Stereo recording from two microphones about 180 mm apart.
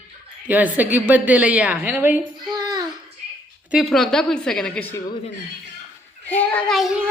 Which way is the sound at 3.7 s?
Centre (ahead or behind).